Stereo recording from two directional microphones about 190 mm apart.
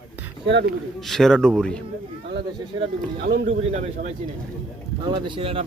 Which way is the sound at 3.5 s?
35° right (ahead or behind).